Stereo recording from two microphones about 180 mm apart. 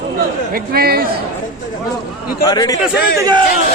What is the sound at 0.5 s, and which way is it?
Speech, 55° right (ahead or behind).